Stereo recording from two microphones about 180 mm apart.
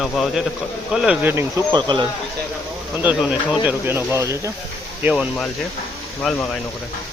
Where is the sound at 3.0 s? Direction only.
5° right (ahead or behind).